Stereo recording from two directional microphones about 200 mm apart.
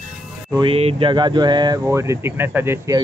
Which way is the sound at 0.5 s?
25° right (ahead or behind).